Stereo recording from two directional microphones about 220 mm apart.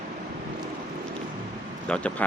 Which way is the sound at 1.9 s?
5° left (ahead or behind).